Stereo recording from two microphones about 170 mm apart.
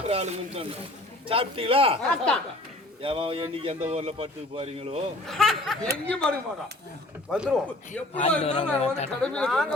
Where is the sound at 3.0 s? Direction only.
30° right (ahead or behind).